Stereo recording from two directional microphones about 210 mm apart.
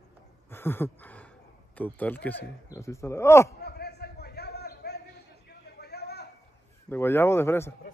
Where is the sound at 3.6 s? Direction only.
50° left (ahead or behind).